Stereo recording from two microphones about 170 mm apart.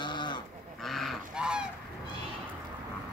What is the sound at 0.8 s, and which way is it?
Goose, centre (ahead or behind).